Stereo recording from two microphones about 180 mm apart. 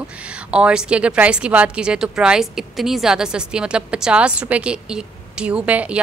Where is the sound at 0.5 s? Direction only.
5° right (ahead or behind).